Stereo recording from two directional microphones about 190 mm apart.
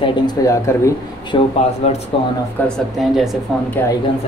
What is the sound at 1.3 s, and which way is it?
Speech, 25° left (ahead or behind).